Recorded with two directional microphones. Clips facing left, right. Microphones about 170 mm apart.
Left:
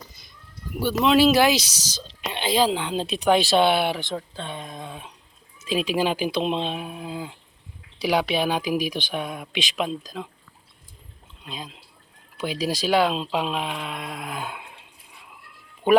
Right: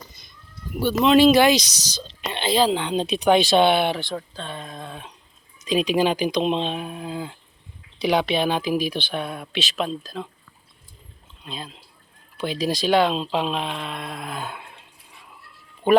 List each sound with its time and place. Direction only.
0.7 s speech: 5° left (ahead or behind)
4.0 s speech: 20° left (ahead or behind)
11.4 s speech: 10° left (ahead or behind)
15.9 s a man's voice: 10° left (ahead or behind)